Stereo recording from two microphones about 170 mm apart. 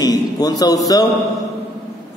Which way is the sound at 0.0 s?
20° left (ahead or behind).